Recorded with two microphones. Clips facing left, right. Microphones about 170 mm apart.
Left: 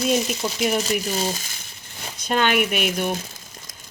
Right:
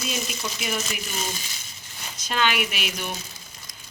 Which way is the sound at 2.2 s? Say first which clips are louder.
Left 5 dB; 50° left (ahead or behind).